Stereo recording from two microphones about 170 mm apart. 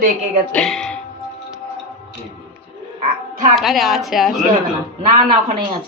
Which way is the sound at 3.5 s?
Centre (ahead or behind).